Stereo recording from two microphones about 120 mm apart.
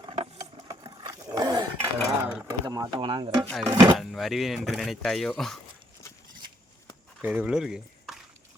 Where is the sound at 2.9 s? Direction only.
45° right (ahead or behind).